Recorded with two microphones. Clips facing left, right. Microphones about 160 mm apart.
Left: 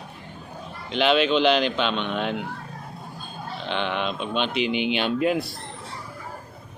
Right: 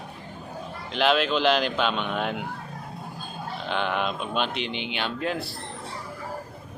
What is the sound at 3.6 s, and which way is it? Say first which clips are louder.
Speech: even; 5° right (ahead or behind).